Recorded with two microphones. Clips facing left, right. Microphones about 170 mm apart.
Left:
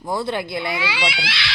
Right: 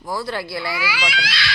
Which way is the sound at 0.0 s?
20° left (ahead or behind).